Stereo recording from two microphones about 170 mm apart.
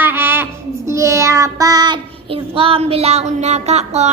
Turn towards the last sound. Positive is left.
turn(degrees=-40)  # may be behind; listen again after turning